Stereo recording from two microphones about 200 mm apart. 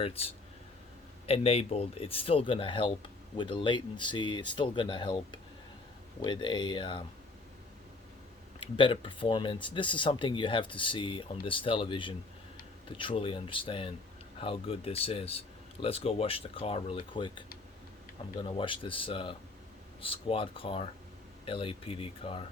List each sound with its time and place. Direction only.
0.0 s speech: 30° left (ahead or behind)
1.3 s speech: 30° left (ahead or behind)
6.2 s speech: 20° left (ahead or behind)
8.6 s speech: 25° left (ahead or behind)